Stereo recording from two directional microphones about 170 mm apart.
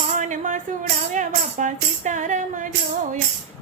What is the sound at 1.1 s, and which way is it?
Speech, 50° right (ahead or behind).